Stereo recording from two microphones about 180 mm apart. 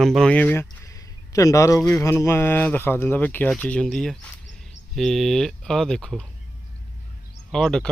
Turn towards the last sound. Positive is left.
turn(degrees=5)  # may be behind; listen again after turning